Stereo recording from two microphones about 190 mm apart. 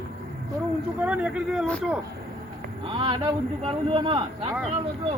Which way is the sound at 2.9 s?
25° right (ahead or behind).